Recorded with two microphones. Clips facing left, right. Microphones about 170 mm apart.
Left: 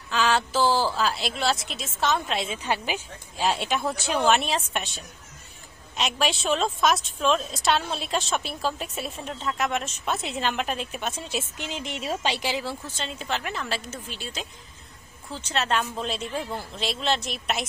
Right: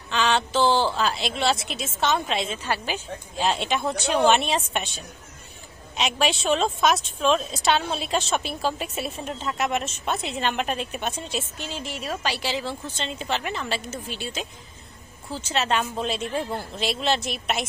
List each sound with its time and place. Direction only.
0.1 s a woman's voice: centre (ahead or behind)
2.5 s a woman's voice: 15° left (ahead or behind)
11.5 s a woman's voice: 15° left (ahead or behind)
12.4 s a woman's voice: 10° left (ahead or behind)